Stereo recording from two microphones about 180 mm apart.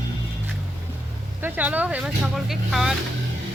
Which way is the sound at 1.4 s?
10° right (ahead or behind).